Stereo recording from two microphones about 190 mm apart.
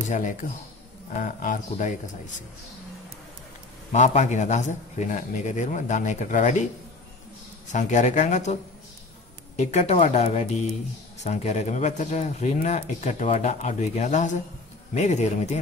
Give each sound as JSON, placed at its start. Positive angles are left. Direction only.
{"t": 0.1, "sound": "speech", "side_deg": 40}
{"t": 3.9, "sound": "speech", "side_deg": 35}
{"t": 7.6, "sound": "speech", "side_deg": 40}
{"t": 9.6, "sound": "speech", "side_deg": 35}